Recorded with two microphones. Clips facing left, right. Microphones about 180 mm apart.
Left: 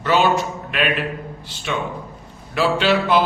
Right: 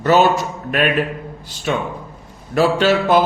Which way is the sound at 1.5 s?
45° right (ahead or behind).